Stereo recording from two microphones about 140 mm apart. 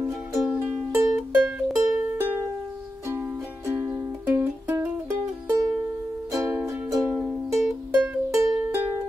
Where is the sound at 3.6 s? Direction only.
15° right (ahead or behind).